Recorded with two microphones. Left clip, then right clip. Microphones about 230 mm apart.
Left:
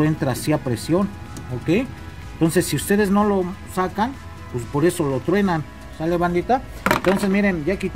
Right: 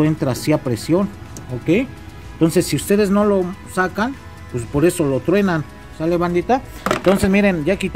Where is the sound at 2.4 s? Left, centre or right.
Centre.